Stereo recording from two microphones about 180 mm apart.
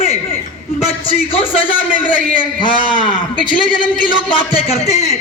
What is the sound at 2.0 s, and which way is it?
Speech, 10° left (ahead or behind).